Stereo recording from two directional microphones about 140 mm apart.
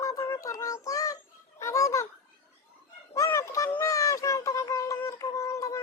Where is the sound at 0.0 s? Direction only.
20° left (ahead or behind).